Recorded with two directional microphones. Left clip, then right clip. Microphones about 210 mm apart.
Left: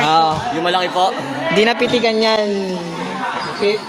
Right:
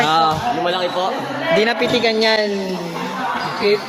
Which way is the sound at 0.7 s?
55° left (ahead or behind).